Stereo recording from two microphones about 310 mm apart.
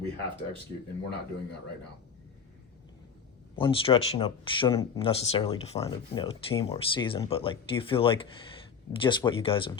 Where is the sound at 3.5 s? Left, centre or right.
Centre.